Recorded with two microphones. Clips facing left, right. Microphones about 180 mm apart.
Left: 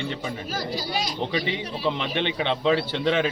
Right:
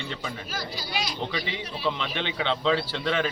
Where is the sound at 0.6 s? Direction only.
40° left (ahead or behind).